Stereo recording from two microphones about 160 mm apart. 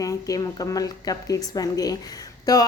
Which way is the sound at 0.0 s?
20° left (ahead or behind).